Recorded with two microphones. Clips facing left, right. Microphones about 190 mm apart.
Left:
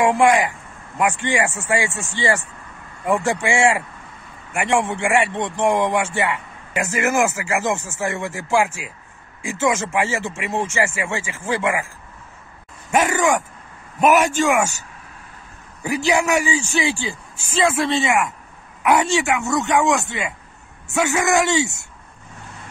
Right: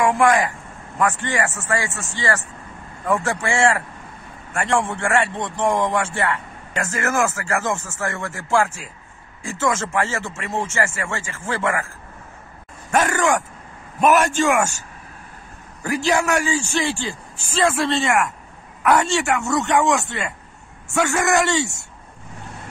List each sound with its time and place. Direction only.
0.0 s a man's voice: 20° left (ahead or behind)
12.9 s a man's voice: 15° left (ahead or behind)
15.9 s a man's voice: 10° left (ahead or behind)